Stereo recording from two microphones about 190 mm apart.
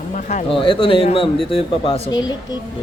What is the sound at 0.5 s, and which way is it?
Speech, 25° left (ahead or behind).